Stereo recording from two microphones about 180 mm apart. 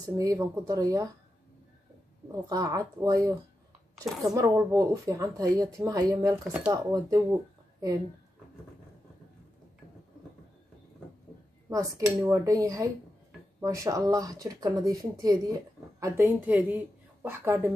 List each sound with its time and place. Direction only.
0.2 s speech: 20° right (ahead or behind)
2.5 s a woman's voice: 20° right (ahead or behind)
11.7 s a woman's voice: 20° right (ahead or behind)